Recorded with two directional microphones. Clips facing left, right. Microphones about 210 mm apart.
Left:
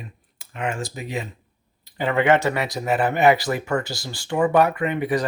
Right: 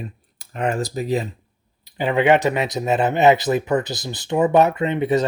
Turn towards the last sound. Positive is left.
turn(degrees=-25)  # may be behind; listen again after turning